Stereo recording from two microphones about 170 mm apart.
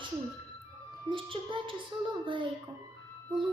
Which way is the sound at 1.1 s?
30° right (ahead or behind).